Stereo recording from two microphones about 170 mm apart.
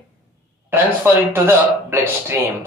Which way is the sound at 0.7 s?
10° right (ahead or behind).